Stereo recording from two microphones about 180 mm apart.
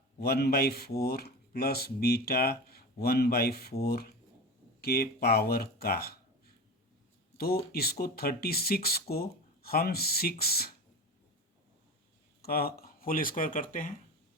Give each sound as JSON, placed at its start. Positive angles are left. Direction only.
{"t": 0.2, "sound": "speech", "side_deg": 60}
{"t": 12.4, "sound": "speech", "side_deg": 55}